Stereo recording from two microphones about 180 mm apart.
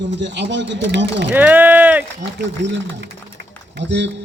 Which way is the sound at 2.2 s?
70° right (ahead or behind).